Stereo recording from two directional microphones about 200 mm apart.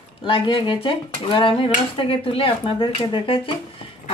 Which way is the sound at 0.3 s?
25° left (ahead or behind).